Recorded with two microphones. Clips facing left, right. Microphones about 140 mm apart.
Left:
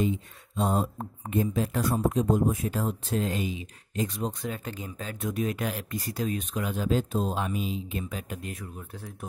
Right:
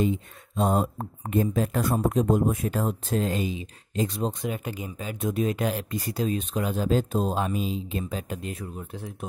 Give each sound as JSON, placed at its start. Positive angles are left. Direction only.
{"t": 0.6, "sound": "speech", "side_deg": -55}
{"t": 4.6, "sound": "speech", "side_deg": -10}
{"t": 5.2, "sound": "speech", "side_deg": -25}